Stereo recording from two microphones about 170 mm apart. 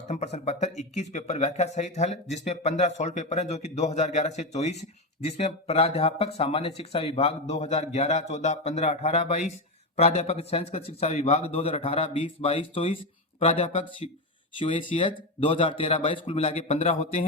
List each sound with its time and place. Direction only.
0.1 s speech: 40° left (ahead or behind)